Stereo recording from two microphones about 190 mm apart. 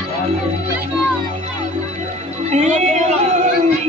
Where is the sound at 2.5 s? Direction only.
35° right (ahead or behind).